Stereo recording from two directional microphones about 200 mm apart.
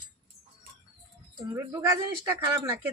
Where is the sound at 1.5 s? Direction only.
15° right (ahead or behind).